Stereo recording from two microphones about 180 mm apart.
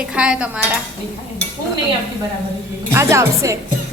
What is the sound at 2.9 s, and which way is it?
Speech, 15° right (ahead or behind).